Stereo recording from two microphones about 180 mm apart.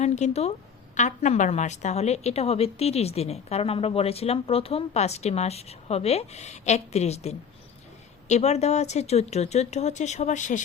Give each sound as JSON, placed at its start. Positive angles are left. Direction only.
{"t": 0.0, "sound": "a woman's voice", "side_deg": 40}